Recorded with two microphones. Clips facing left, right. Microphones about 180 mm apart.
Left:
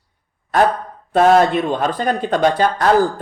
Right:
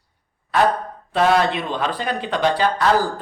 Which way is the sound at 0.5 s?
45° left (ahead or behind).